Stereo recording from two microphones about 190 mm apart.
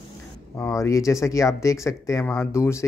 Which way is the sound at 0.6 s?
15° left (ahead or behind).